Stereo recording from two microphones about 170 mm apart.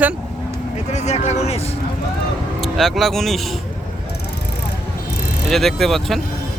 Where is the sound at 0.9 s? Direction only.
40° left (ahead or behind).